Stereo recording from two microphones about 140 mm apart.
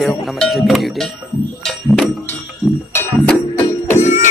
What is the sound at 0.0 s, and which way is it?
Music, centre (ahead or behind).